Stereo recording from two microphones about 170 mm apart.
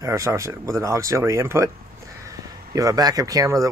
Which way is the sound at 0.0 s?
20° right (ahead or behind).